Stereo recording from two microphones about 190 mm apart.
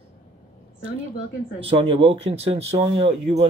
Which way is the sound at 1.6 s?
30° right (ahead or behind).